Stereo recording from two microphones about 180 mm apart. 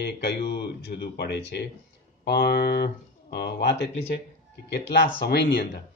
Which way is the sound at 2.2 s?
65° left (ahead or behind).